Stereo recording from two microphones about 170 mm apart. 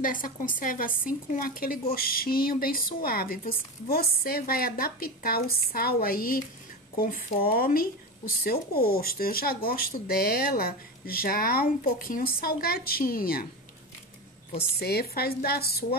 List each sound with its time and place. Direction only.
0.0 s speech: 55° left (ahead or behind)
14.8 s a woman's voice: 65° left (ahead or behind)